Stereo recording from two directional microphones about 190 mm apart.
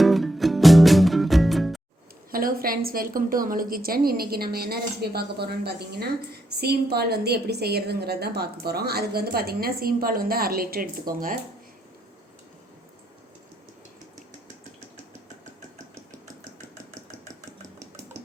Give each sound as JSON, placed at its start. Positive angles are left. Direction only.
{"t": 0.0, "sound": "music", "side_deg": 0}
{"t": 2.3, "sound": "a woman's voice", "side_deg": -50}